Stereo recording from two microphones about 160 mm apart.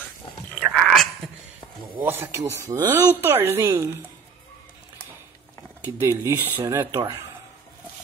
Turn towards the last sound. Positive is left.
turn(degrees=-20)  # may be behind; listen again after turning